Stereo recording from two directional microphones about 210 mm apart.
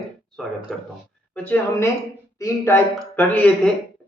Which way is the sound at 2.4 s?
15° left (ahead or behind).